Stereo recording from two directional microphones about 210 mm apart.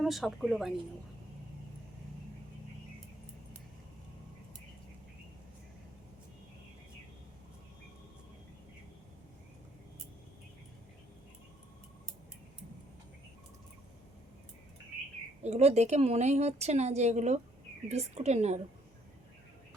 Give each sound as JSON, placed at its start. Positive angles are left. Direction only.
{"t": 0.0, "sound": "a woman's voice", "side_deg": 0}
{"t": 15.4, "sound": "speech", "side_deg": -30}